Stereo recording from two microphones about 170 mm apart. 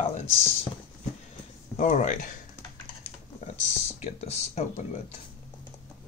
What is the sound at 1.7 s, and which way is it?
Speech, 45° left (ahead or behind).